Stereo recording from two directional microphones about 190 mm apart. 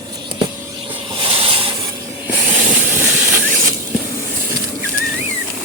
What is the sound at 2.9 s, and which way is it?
Train, 10° right (ahead or behind).